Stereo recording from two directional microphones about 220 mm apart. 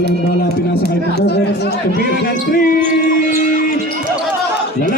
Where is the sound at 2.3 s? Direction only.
40° left (ahead or behind).